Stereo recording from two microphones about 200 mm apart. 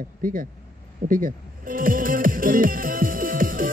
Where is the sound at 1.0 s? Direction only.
45° right (ahead or behind).